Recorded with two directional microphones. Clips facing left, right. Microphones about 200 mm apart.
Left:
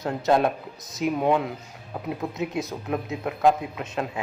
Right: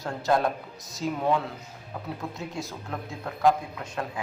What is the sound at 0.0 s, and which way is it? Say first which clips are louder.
A man's voice: left 4 dB; 20° left (ahead or behind).